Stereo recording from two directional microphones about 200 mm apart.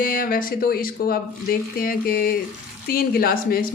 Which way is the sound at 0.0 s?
45° left (ahead or behind).